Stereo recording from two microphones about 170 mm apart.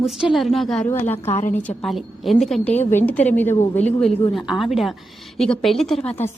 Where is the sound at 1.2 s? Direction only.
45° left (ahead or behind).